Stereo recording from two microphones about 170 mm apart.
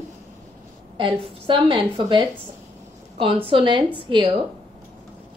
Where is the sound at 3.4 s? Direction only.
30° right (ahead or behind).